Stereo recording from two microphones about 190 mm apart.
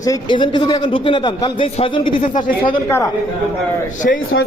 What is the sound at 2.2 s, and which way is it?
Speech, 45° left (ahead or behind).